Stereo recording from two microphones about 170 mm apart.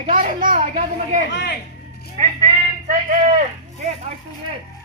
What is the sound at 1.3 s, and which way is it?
Speech, 90° left.